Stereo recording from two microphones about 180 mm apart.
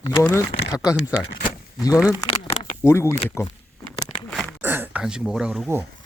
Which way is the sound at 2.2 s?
30° left (ahead or behind).